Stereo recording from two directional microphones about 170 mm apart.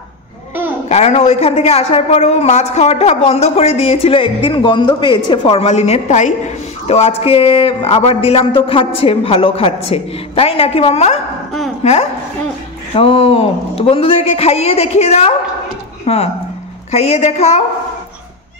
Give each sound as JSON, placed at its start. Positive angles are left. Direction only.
{"t": 0.8, "sound": "a man's voice", "side_deg": 40}